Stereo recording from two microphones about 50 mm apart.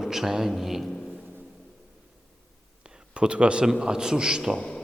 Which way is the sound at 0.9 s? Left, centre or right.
Centre.